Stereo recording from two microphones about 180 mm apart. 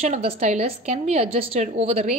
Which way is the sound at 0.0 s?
35° right (ahead or behind).